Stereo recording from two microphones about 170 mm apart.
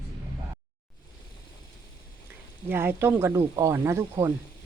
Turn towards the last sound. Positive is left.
turn(degrees=-15)  # may be behind; listen again after turning